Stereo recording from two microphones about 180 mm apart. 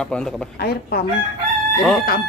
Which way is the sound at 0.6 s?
60° left (ahead or behind).